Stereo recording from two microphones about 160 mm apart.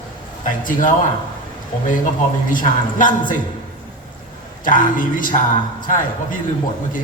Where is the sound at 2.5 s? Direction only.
55° left (ahead or behind).